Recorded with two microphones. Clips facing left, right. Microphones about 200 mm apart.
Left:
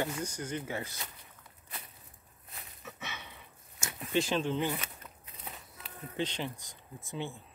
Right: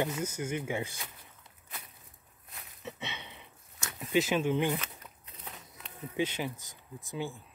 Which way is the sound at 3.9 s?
5° right (ahead or behind).